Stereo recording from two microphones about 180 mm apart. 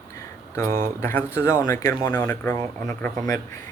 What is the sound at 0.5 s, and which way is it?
Speech, 15° left (ahead or behind).